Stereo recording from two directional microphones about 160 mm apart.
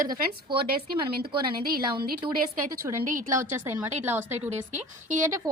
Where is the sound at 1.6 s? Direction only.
70° right (ahead or behind).